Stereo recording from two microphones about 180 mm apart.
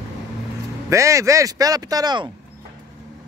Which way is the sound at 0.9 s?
15° right (ahead or behind).